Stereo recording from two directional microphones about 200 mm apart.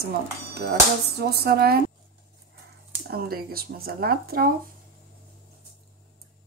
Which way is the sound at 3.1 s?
50° right (ahead or behind).